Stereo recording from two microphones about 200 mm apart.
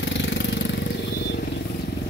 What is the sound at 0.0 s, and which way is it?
Engine, 65° left (ahead or behind).